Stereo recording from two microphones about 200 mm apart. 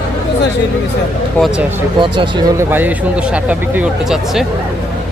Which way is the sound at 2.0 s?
25° right (ahead or behind).